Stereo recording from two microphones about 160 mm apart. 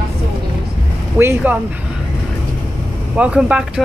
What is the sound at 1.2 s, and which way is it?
Speech, 15° right (ahead or behind).